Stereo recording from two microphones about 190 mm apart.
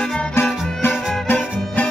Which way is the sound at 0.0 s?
5° left (ahead or behind).